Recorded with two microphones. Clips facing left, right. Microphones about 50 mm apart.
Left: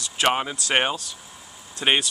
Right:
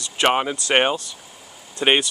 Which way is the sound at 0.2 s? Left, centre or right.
Centre.